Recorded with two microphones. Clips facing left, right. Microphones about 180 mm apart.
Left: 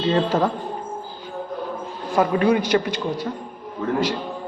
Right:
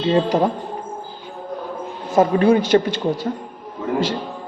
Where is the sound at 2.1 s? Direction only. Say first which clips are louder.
Right 4 dB; 30° right (ahead or behind).